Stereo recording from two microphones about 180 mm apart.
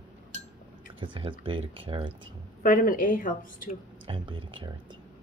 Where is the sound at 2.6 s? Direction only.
50° left (ahead or behind).